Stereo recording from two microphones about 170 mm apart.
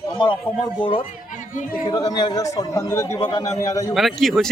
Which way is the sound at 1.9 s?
20° left (ahead or behind).